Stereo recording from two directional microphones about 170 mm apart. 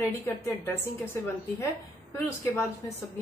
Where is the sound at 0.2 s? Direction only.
15° left (ahead or behind).